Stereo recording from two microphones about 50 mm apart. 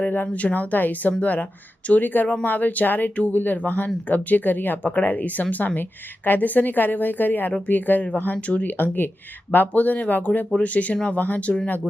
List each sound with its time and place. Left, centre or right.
0.0 s a woman's voice: left